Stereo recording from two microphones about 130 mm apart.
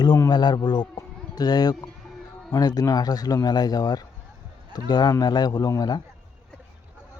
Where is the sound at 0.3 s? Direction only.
35° left (ahead or behind).